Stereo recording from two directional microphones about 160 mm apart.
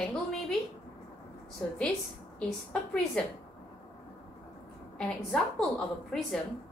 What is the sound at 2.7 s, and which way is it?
Speech, 5° left (ahead or behind).